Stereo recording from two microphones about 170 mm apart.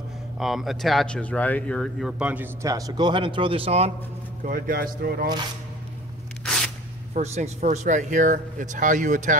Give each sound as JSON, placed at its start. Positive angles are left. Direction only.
{"t": 0.4, "sound": "speech", "side_deg": 0}
{"t": 4.5, "sound": "speech", "side_deg": -55}
{"t": 7.2, "sound": "speech", "side_deg": -40}